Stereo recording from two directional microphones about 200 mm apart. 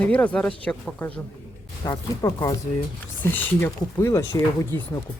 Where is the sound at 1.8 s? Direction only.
15° left (ahead or behind).